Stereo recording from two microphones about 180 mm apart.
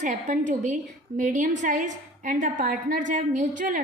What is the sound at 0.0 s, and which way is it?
A woman's voice, 45° right (ahead or behind).